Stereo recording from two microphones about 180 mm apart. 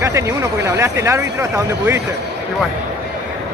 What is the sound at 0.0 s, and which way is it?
Speech, 15° right (ahead or behind).